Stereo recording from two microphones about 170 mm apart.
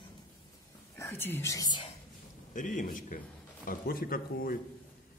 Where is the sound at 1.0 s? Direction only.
15° left (ahead or behind).